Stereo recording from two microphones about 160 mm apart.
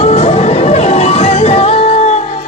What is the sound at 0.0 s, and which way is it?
Music, 40° left (ahead or behind).